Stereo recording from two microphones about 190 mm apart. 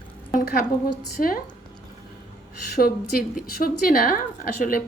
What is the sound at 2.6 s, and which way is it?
A woman's voice, 55° left (ahead or behind).